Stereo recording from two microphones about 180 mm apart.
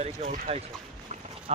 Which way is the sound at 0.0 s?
40° right (ahead or behind).